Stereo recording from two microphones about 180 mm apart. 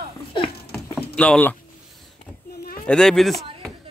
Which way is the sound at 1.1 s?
5° left (ahead or behind).